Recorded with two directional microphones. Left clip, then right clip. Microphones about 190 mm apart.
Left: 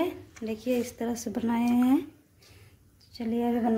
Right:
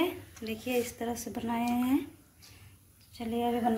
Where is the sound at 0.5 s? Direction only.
50° left (ahead or behind).